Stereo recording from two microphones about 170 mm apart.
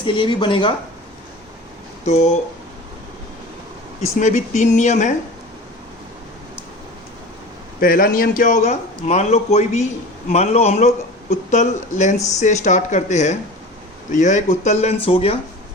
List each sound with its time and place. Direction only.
0.0 s speech: 30° left (ahead or behind)
2.0 s speech: 40° left (ahead or behind)
4.0 s speech: 45° left (ahead or behind)
7.8 s speech: 60° left (ahead or behind); by 15.4 s 35° left (ahead or behind)